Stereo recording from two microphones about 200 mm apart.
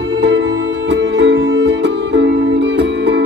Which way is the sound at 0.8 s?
60° right (ahead or behind).